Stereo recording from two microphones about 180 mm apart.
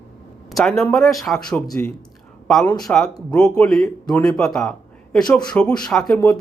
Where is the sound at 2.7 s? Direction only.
Centre (ahead or behind).